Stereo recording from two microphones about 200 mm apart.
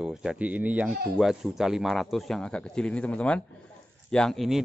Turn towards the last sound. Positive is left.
turn(degrees=0)  # may be behind; listen again after turning